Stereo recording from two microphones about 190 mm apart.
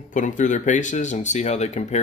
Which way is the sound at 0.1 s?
40° left (ahead or behind).